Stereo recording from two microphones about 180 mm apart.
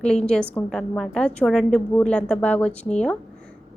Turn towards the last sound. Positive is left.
turn(degrees=5)  # may be behind; listen again after turning